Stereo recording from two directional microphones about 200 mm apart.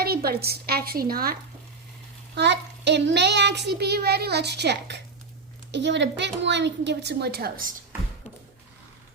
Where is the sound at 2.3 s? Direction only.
60° right (ahead or behind).